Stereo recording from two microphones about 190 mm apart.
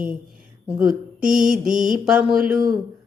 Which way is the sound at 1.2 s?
45° right (ahead or behind).